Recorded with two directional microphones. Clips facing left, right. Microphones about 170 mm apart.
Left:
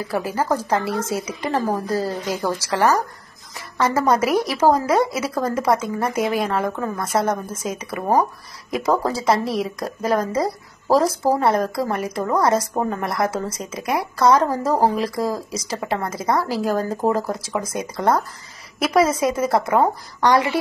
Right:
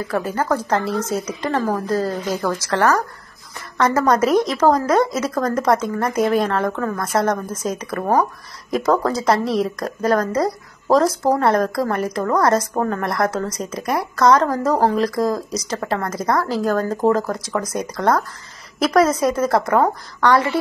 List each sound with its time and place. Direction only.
0.1 s a woman's voice: 5° left (ahead or behind)
20.2 s a woman's voice: 15° left (ahead or behind)